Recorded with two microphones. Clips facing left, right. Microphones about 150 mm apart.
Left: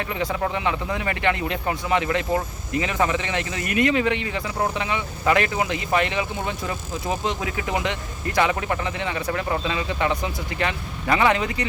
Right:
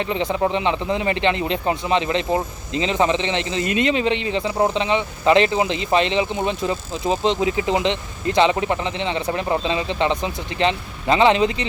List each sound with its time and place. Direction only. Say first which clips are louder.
0.0 s speech: right 4 dB; 20° right (ahead or behind)